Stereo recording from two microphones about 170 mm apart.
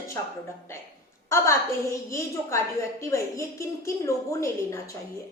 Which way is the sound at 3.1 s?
15° left (ahead or behind).